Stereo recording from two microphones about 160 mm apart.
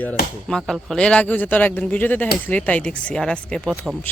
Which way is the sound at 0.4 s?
5° left (ahead or behind).